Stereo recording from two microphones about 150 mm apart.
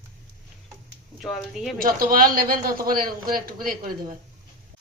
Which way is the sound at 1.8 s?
65° right (ahead or behind).